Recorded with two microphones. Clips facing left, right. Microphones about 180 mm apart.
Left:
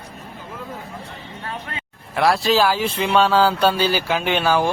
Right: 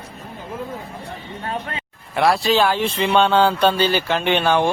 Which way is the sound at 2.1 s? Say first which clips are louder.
Even; centre (ahead or behind).